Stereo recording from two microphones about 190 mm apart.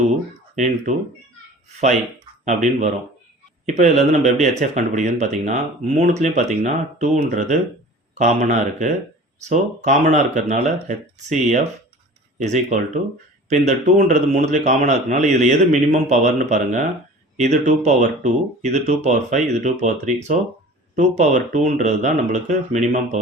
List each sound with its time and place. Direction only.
0.5 s a man's voice: 40° right (ahead or behind)
2.4 s a man's voice: 40° right (ahead or behind)